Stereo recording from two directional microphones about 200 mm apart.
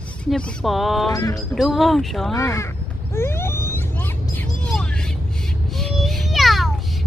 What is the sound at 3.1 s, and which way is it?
Vehicle, 10° left (ahead or behind).